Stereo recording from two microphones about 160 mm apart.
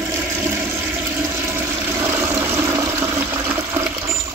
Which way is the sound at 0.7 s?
15° right (ahead or behind).